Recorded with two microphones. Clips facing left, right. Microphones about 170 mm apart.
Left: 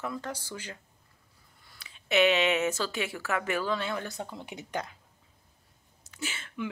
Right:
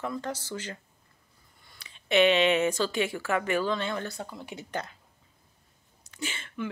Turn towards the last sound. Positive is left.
turn(degrees=5)  # may be behind; listen again after turning